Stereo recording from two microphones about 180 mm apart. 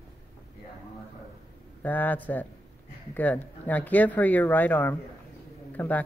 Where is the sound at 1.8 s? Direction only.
10° left (ahead or behind).